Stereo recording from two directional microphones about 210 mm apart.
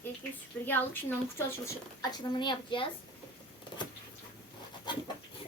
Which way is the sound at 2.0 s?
20° left (ahead or behind).